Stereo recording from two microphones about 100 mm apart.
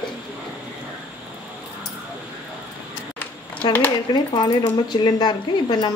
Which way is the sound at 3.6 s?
50° left (ahead or behind).